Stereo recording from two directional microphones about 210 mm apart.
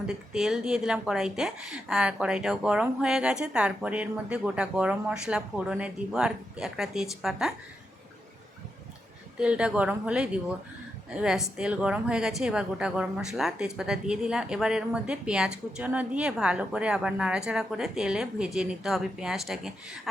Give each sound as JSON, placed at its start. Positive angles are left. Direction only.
{"t": 0.1, "sound": "a woman's voice", "side_deg": -5}
{"t": 9.4, "sound": "a woman's voice", "side_deg": -5}